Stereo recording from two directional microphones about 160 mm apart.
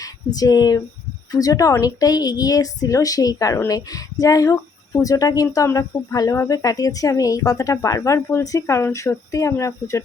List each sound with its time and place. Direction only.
0.3 s speech: 25° left (ahead or behind)